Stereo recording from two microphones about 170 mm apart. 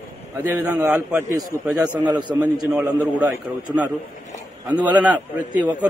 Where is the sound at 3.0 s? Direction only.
10° right (ahead or behind).